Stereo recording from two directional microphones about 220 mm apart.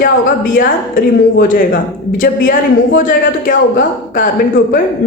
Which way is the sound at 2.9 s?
40° left (ahead or behind).